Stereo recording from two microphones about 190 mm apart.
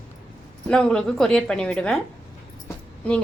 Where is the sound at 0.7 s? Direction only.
5° left (ahead or behind).